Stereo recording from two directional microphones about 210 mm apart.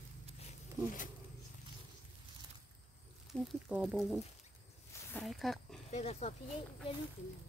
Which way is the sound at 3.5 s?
5° right (ahead or behind).